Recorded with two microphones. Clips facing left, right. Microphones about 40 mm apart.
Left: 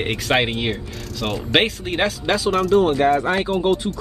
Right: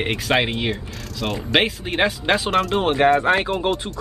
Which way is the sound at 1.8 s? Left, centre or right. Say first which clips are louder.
Right 1 dB; centre.